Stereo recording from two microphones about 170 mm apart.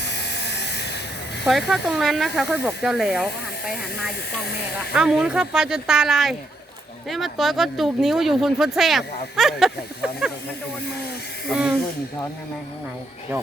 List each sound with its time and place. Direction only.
0.1 s electric shaver: 85° left
1.5 s speech: centre (ahead or behind)
4.9 s speech: 5° right (ahead or behind)
11.4 s speech: 5° right (ahead or behind)